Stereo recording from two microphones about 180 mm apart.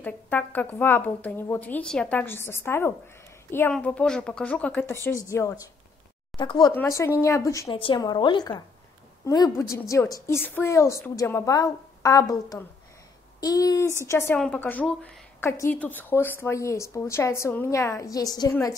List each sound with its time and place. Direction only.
0.0 s a woman's voice: 10° left (ahead or behind); by 6.7 s 25° left (ahead or behind)
6.7 s a woman's voice: 15° left (ahead or behind)
7.7 s a woman's voice: 30° left (ahead or behind)